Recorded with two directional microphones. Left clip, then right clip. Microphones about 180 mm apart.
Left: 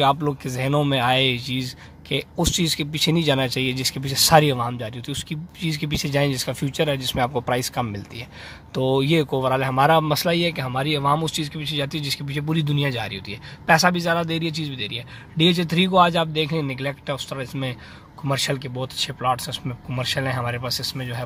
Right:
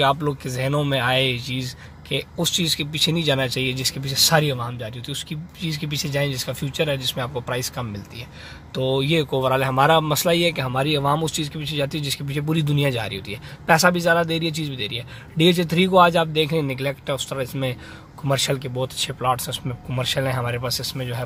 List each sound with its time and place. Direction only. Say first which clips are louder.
0.0 s speech: even; 20° left (ahead or behind)